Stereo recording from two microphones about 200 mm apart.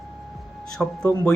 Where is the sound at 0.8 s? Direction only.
5° left (ahead or behind).